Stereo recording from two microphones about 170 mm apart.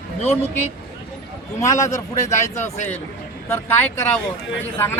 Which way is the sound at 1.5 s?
15° left (ahead or behind).